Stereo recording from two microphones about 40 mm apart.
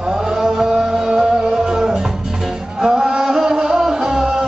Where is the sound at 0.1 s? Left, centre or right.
Centre.